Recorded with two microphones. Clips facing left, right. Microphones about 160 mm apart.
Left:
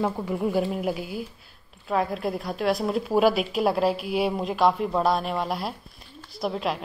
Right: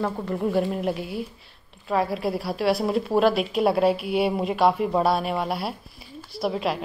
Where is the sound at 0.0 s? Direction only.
5° left (ahead or behind).